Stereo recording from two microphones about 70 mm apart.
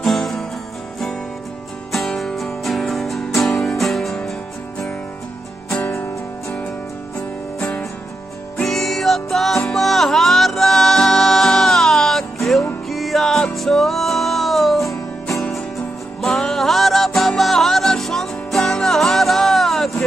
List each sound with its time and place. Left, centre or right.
0.0 s music: centre
1.9 s music: centre
7.5 s music: centre
8.6 s music: centre